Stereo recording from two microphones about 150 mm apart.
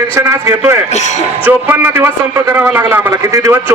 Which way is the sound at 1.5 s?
15° right (ahead or behind).